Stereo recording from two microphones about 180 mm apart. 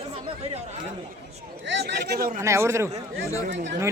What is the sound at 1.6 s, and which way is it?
Speech, 70° right (ahead or behind).